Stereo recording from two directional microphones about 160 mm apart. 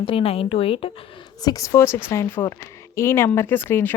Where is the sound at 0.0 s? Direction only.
35° left (ahead or behind).